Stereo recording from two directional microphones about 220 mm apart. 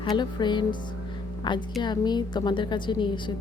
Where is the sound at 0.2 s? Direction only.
20° left (ahead or behind).